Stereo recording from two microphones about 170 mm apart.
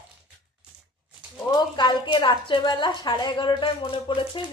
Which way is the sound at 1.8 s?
25° left (ahead or behind).